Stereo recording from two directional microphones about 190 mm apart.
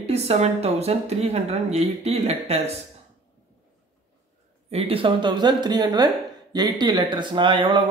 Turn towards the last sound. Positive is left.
turn(degrees=-25)  # may be behind; listen again after turning